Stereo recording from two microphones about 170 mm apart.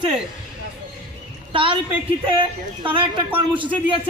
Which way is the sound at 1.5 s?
30° right (ahead or behind).